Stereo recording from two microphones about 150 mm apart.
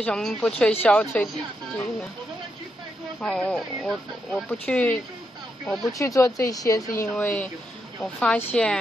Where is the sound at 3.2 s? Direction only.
10° left (ahead or behind).